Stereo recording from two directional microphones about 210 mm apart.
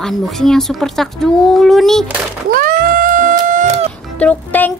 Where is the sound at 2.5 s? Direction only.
40° right (ahead or behind).